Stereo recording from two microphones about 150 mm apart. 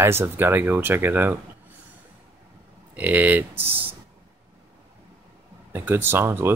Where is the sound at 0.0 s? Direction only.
15° right (ahead or behind).